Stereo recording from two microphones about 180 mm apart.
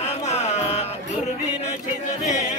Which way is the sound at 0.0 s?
35° left (ahead or behind).